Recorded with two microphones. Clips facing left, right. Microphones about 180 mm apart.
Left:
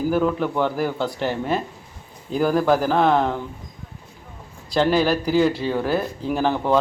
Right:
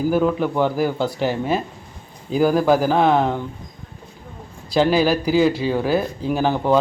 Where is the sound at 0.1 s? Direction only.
5° right (ahead or behind).